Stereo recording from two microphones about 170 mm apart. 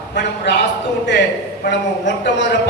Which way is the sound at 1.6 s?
85° left.